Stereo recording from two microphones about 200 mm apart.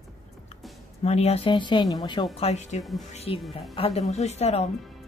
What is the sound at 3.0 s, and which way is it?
Speech, 30° left (ahead or behind).